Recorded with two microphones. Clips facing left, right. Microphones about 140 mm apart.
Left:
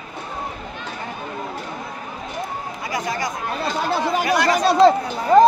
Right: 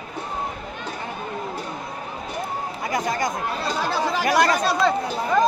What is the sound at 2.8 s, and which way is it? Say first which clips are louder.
Chatter: right 1 dB; 50° right (ahead or behind).